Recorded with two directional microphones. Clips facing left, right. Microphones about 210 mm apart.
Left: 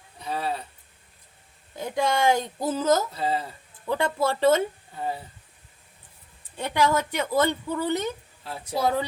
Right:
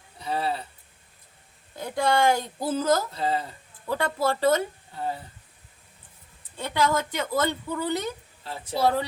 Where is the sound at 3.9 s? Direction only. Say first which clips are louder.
Left 1 dB; 20° left (ahead or behind).